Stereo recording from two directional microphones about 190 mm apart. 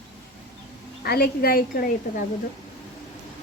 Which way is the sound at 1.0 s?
55° left (ahead or behind).